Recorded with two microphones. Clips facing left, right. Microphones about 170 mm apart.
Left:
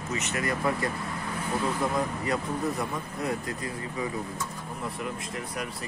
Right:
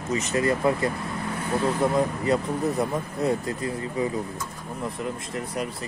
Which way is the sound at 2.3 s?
25° right (ahead or behind).